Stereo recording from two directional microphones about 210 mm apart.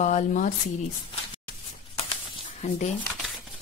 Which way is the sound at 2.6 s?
30° left (ahead or behind).